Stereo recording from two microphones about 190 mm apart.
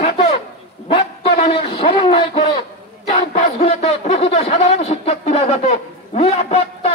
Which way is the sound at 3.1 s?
30° left (ahead or behind).